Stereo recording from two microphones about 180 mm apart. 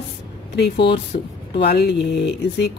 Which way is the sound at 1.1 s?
45° left (ahead or behind).